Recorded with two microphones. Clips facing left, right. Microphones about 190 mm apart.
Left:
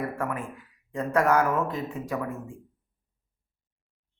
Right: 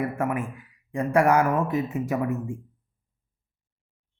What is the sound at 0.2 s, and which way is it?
A man's voice, 15° right (ahead or behind).